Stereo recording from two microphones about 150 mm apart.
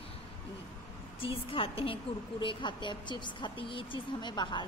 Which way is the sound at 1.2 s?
35° left (ahead or behind).